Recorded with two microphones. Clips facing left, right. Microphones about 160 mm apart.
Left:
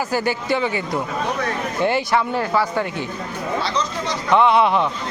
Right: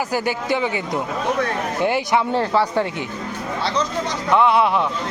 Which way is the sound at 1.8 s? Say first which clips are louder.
Even; 15° right (ahead or behind).